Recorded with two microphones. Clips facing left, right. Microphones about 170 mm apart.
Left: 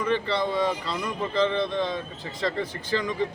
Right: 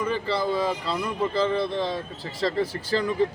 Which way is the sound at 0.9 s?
35° right (ahead or behind).